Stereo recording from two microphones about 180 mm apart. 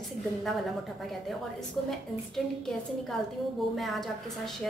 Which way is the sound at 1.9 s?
Centre (ahead or behind).